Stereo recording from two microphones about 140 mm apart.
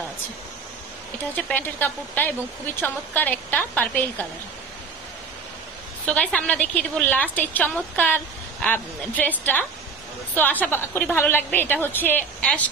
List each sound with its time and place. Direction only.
1.3 s speech: 10° left (ahead or behind)
6.0 s speech: 10° left (ahead or behind)